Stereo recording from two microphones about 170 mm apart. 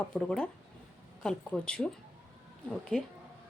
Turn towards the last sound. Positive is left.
turn(degrees=5)  # may be behind; listen again after turning